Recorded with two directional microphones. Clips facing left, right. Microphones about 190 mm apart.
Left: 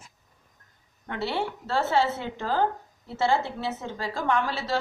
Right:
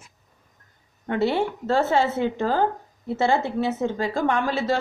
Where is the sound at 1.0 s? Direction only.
50° right (ahead or behind).